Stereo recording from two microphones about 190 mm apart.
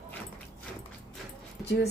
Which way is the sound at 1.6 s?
60° left (ahead or behind).